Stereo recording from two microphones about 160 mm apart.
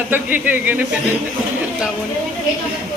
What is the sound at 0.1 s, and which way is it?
Speech, 10° right (ahead or behind).